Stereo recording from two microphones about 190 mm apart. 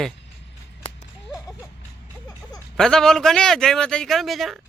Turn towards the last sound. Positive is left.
turn(degrees=0)  # may be behind; listen again after turning